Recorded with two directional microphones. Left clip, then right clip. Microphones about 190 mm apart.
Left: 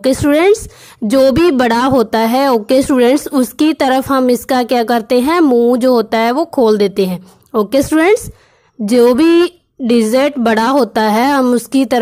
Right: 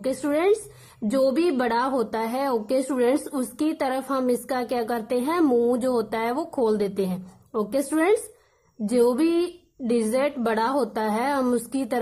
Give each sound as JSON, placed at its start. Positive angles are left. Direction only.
{"t": 0.0, "sound": "a woman's voice", "side_deg": 30}